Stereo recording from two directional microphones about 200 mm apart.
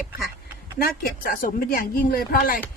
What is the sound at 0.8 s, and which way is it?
Speech, 45° left (ahead or behind).